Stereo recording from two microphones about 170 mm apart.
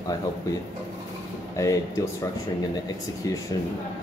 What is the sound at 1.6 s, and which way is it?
Speech, 20° left (ahead or behind).